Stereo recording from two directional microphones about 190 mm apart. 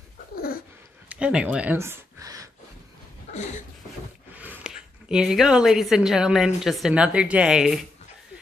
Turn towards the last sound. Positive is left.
turn(degrees=-5)  # may be behind; listen again after turning